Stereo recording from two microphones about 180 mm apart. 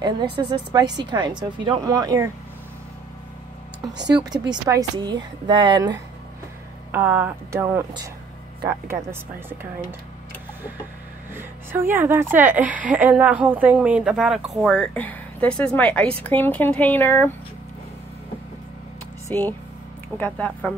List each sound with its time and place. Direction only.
0.0 s a woman's voice: 25° right (ahead or behind)
4.1 s a woman's voice: 20° right (ahead or behind)
6.9 s a woman's voice: 10° right (ahead or behind)
11.3 s a woman's voice: 10° right (ahead or behind); by 17.3 s 10° left (ahead or behind)
19.2 s speech: 10° left (ahead or behind)